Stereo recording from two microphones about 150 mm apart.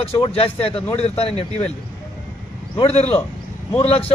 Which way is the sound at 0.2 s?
40° left (ahead or behind).